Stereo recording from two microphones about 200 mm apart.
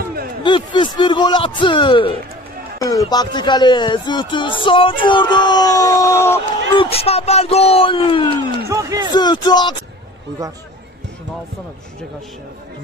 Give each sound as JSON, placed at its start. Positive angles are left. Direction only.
{"t": 0.0, "sound": "a sound", "side_deg": -50}
{"t": 0.4, "sound": "speech", "side_deg": 25}
{"t": 6.7, "sound": "speech", "side_deg": 25}
{"t": 8.6, "sound": "speech", "side_deg": -15}
{"t": 9.1, "sound": "speech", "side_deg": 20}